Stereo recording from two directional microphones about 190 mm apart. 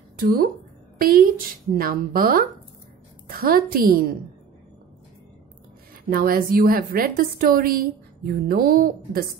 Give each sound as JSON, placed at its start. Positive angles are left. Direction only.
{"t": 0.2, "sound": "a woman's voice", "side_deg": -50}
{"t": 6.0, "sound": "a woman's voice", "side_deg": -50}